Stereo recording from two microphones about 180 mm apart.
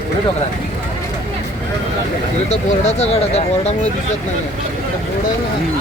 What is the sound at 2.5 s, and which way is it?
Speech, 40° left (ahead or behind).